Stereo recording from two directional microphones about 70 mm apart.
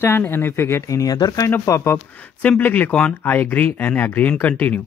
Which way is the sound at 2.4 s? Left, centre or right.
Left.